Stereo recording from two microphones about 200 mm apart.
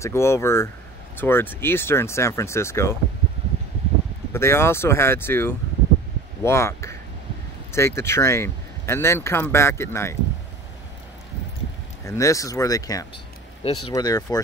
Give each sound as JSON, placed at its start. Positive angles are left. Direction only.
{"t": 0.0, "sound": "speech", "side_deg": 15}
{"t": 4.3, "sound": "speech", "side_deg": 15}
{"t": 12.0, "sound": "speech", "side_deg": 15}